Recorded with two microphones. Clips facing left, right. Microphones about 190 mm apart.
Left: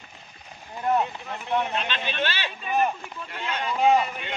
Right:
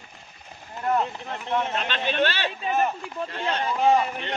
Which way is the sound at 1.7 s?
45° right (ahead or behind).